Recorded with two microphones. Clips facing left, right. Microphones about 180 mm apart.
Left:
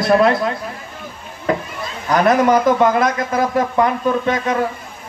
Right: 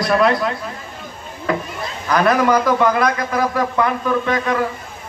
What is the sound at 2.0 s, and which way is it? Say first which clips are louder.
A man's voice: left 2 dB; 20° left (ahead or behind).